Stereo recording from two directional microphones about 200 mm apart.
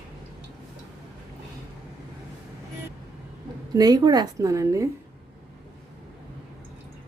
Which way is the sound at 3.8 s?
20° right (ahead or behind).